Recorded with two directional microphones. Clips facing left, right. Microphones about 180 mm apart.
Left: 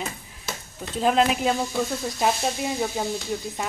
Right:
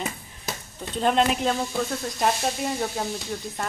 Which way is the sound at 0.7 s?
5° left (ahead or behind).